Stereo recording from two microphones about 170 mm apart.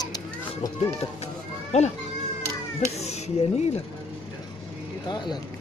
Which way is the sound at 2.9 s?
40° left (ahead or behind).